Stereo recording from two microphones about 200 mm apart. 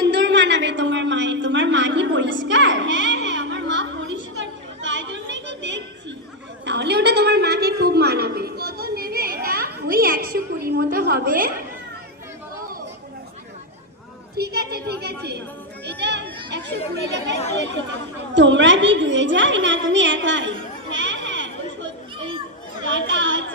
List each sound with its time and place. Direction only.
0.0 s a sound: 60° right (ahead or behind); by 11.5 s 45° right (ahead or behind)
14.3 s a woman's voice: 55° right (ahead or behind)
15.9 s children playing: 60° right (ahead or behind)
18.3 s a woman's voice: 65° right (ahead or behind)
22.9 s chatter: 65° right (ahead or behind)